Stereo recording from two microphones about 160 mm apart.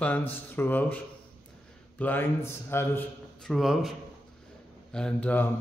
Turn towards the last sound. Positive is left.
turn(degrees=10)  # may be behind; listen again after turning